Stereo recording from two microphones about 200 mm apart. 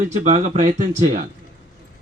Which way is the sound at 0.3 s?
35° right (ahead or behind).